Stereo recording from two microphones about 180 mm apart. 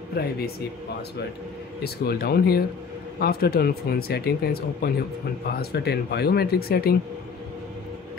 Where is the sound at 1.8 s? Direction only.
60° left (ahead or behind).